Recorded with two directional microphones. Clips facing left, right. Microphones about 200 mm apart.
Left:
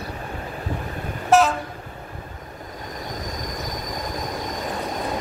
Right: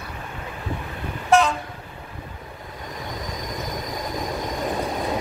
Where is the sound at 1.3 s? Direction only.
Centre (ahead or behind).